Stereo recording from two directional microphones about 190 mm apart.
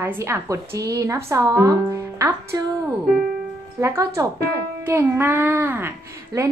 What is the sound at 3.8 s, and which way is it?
A woman's voice, 15° right (ahead or behind).